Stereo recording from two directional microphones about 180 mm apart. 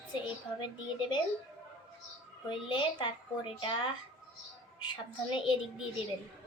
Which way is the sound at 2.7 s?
25° left (ahead or behind).